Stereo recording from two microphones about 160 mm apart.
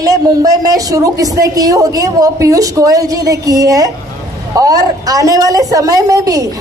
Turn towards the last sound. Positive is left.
turn(degrees=-20)  # may be behind; listen again after turning